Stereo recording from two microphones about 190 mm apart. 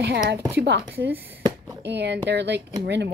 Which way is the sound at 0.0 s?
60° right (ahead or behind).